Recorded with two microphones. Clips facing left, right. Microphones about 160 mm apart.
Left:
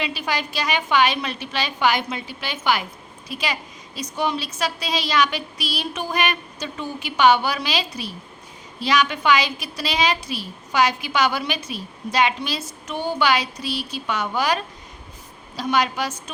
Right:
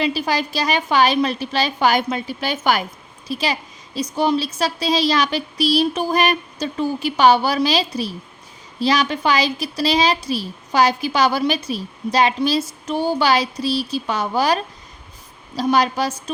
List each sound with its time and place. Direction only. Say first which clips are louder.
0.0 s speech: right 6 dB; 35° right (ahead or behind)
3.2 s a woman's voice: right 5 dB; 30° right (ahead or behind)